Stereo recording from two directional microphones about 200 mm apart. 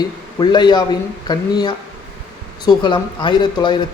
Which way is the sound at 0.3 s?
20° left (ahead or behind).